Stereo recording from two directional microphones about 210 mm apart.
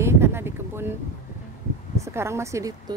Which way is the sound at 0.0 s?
10° right (ahead or behind).